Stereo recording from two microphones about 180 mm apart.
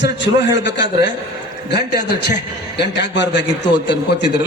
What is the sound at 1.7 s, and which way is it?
A man's voice, 65° left (ahead or behind).